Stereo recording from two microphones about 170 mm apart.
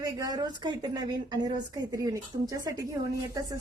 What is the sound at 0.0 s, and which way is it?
A woman's voice, 25° right (ahead or behind).